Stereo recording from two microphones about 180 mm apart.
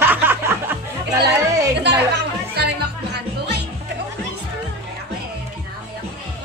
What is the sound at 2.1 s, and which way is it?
Music, 65° right (ahead or behind).